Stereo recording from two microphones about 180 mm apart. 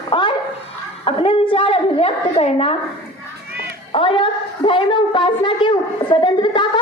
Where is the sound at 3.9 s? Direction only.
30° left (ahead or behind).